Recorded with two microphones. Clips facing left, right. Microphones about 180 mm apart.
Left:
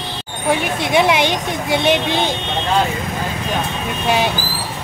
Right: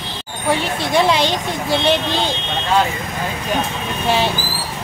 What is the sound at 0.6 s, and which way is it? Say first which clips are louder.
Speech: left 1 dB; 20° left (ahead or behind).